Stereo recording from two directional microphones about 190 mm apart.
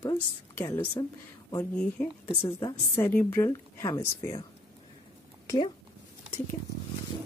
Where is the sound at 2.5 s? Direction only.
20° left (ahead or behind).